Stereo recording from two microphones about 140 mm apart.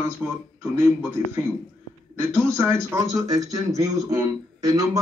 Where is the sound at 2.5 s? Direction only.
20° right (ahead or behind).